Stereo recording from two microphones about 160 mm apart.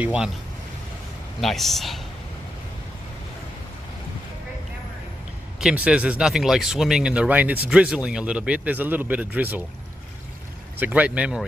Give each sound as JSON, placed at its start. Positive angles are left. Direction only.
{"t": 0.0, "sound": "speech", "side_deg": -5}
{"t": 1.4, "sound": "speech", "side_deg": 0}
{"t": 5.6, "sound": "speech", "side_deg": -5}
{"t": 10.8, "sound": "speech", "side_deg": -10}